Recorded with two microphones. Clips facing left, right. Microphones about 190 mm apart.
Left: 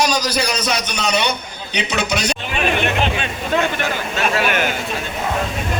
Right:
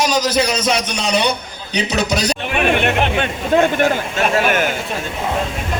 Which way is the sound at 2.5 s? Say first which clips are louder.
Right 3 dB; 60° right (ahead or behind).